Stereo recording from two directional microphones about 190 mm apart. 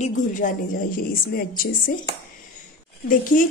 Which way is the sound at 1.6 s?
50° left (ahead or behind).